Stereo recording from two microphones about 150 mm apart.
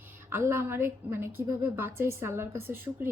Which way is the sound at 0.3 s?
15° right (ahead or behind).